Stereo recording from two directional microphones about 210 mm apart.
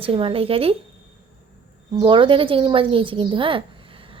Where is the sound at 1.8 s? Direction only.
20° right (ahead or behind).